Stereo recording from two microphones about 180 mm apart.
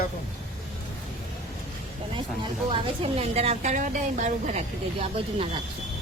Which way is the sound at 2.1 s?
30° right (ahead or behind).